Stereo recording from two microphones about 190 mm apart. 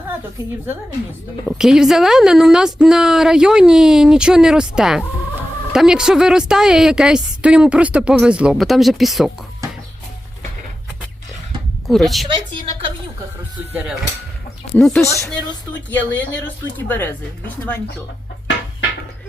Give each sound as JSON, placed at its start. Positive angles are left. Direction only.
{"t": 1.5, "sound": "a woman's voice", "side_deg": -5}
{"t": 11.9, "sound": "a woman's voice", "side_deg": 0}
{"t": 12.3, "sound": "a woman's voice", "side_deg": -25}
{"t": 14.8, "sound": "a woman's voice", "side_deg": 0}
{"t": 15.0, "sound": "speech", "side_deg": 15}